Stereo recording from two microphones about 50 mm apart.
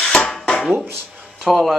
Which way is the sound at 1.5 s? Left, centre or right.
Centre.